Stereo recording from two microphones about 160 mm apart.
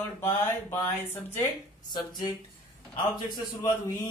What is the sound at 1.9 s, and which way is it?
A man's voice, 25° left (ahead or behind).